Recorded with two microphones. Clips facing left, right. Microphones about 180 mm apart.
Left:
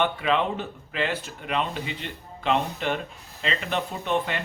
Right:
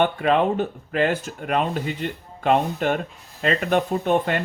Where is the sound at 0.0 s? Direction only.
50° right (ahead or behind).